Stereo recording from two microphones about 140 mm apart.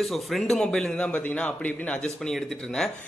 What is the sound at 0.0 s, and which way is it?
Speech, centre (ahead or behind).